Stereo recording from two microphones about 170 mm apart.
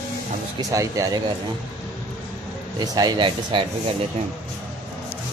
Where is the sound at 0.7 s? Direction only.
20° right (ahead or behind).